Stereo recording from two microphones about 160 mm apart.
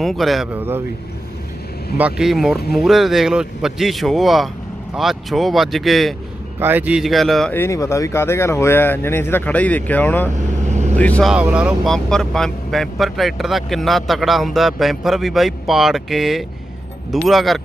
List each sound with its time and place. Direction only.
0.0 s speech: centre (ahead or behind)
0.6 s speech: 15° right (ahead or behind)
2.0 s speech: 5° right (ahead or behind)
6.6 s speech: 10° right (ahead or behind)
7.5 s speech: 20° left (ahead or behind)
10.7 s vehicle: 45° right (ahead or behind)
11.0 s speech: 10° left (ahead or behind)
11.3 s speech: 5° right (ahead or behind)